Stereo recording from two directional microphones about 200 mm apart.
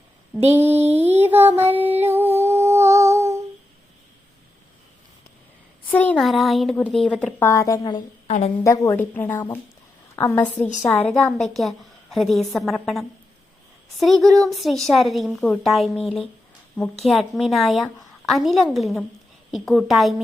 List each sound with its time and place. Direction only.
0.5 s music: 10° right (ahead or behind)
1.7 s humming: 10° right (ahead or behind)
5.9 s a woman's voice: 10° left (ahead or behind)
8.3 s a woman's voice: 30° left (ahead or behind)
8.6 s a woman's voice: 15° left (ahead or behind); by 20.2 s centre (ahead or behind)